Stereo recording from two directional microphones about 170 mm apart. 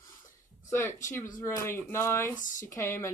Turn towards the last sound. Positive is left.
turn(degrees=15)  # may be behind; listen again after turning